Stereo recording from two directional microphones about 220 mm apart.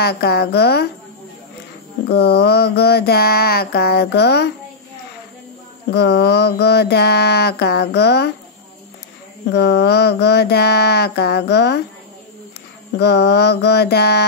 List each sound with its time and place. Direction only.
0.0 s mantra: 45° left (ahead or behind)
2.0 s mantra: 45° left (ahead or behind)
5.9 s mantra: 50° left (ahead or behind)
9.5 s mantra: 50° left (ahead or behind)
12.9 s mantra: 50° left (ahead or behind)